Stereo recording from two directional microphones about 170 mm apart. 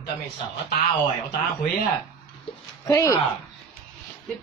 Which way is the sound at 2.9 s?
20° left (ahead or behind).